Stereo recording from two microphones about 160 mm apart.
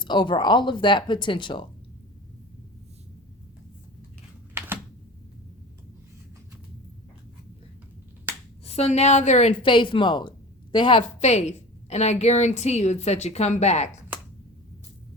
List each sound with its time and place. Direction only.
0.0 s speech: 30° left (ahead or behind)
4.5 s a sound: 15° right (ahead or behind)
8.3 s finger snapping: 15° right (ahead or behind)
8.6 s a woman's voice: 40° left (ahead or behind)
11.2 s a woman's voice: 45° left (ahead or behind)